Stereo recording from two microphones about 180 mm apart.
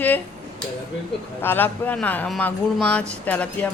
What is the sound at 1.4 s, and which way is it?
A woman's voice, 10° left (ahead or behind).